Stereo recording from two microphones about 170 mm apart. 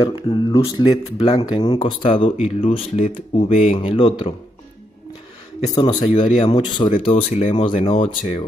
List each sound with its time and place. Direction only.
0.0 s speech: 30° left (ahead or behind)
5.8 s speech: 25° left (ahead or behind)